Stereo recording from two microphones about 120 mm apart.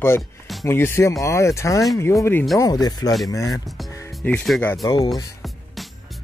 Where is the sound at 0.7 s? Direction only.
20° left (ahead or behind).